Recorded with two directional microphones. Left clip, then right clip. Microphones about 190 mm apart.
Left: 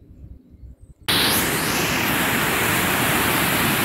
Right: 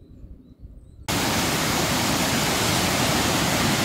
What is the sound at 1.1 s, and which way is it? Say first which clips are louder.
Vehicle: left 4 dB; 35° right (ahead or behind).